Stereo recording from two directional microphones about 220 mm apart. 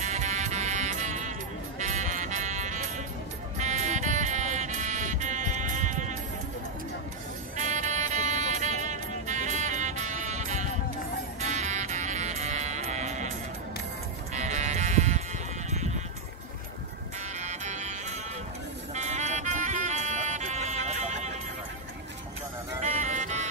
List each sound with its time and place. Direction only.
0.0 s music: 35° right (ahead or behind)
7.5 s music: 35° right (ahead or behind)
14.3 s music: 30° right (ahead or behind)
17.4 s music: 30° right (ahead or behind)
22.8 s music: 35° right (ahead or behind)